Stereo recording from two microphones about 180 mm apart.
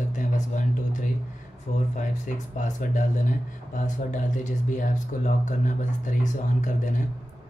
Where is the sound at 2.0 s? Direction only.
45° left (ahead or behind).